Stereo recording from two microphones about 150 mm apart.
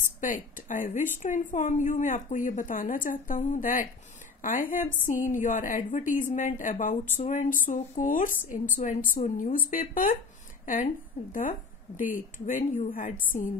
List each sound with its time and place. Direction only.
0.0 s a woman's voice: 60° left (ahead or behind)
12.0 s a woman's voice: 65° left (ahead or behind)